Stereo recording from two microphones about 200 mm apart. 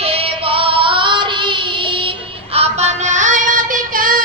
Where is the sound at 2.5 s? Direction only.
30° right (ahead or behind).